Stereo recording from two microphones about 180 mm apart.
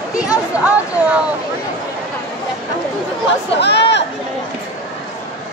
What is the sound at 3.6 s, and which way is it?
Chatter, 70° left (ahead or behind).